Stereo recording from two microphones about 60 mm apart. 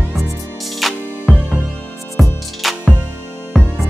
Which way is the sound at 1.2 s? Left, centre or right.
Right.